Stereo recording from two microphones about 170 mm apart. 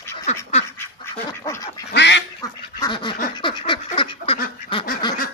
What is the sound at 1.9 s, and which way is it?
Duck, 90° left.